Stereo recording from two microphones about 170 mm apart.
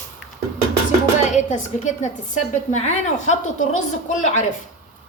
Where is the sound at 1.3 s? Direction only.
45° left (ahead or behind).